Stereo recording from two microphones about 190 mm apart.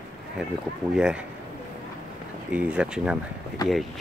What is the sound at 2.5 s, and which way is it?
Speech, 5° right (ahead or behind).